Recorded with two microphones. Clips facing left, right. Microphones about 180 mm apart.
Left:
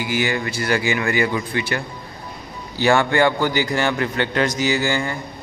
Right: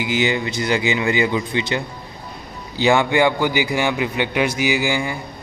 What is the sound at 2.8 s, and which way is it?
A man's voice, 15° right (ahead or behind).